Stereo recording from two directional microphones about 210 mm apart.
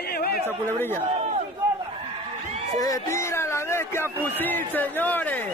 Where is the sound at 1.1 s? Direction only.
30° right (ahead or behind).